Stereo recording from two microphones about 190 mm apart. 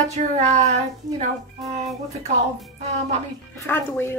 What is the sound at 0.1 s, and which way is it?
Speech, 35° right (ahead or behind).